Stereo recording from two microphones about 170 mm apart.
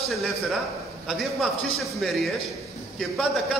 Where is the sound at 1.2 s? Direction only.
Centre (ahead or behind).